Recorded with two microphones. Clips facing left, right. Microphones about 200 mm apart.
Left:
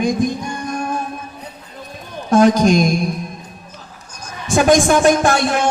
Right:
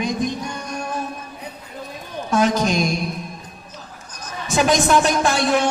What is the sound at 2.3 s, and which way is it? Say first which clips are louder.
Speech: left 7 dB; 45° left (ahead or behind).